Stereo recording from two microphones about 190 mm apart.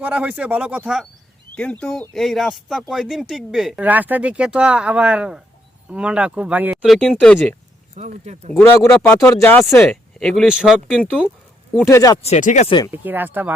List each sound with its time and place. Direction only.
0.0 s speech: 10° right (ahead or behind)
1.5 s speech: 5° left (ahead or behind)
7.9 s speech: 35° right (ahead or behind)
8.5 s speech: 10° left (ahead or behind)
11.9 s speech: 15° left (ahead or behind)
12.2 s speech: 40° left (ahead or behind)
12.9 s speech: 10° right (ahead or behind)